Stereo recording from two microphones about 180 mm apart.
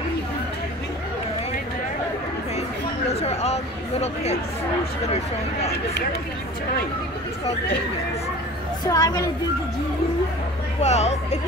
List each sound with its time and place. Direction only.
3.1 s speech: 35° left (ahead or behind)
8.8 s a woman's voice: 20° left (ahead or behind)
10.8 s speech: 35° left (ahead or behind)